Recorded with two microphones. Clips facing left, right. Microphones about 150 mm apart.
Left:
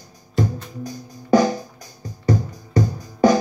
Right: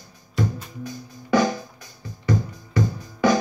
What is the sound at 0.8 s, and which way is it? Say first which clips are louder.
Music: left 2 dB; 40° left (ahead or behind).